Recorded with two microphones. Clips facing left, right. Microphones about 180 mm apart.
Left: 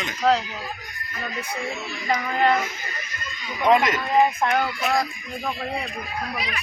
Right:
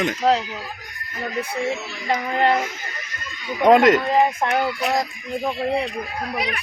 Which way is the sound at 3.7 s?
65° right (ahead or behind).